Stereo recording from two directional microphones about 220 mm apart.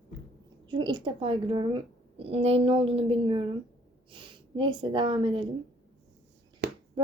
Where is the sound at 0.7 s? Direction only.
20° right (ahead or behind).